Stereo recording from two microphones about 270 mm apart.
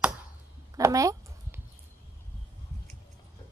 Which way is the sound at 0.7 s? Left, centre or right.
Centre.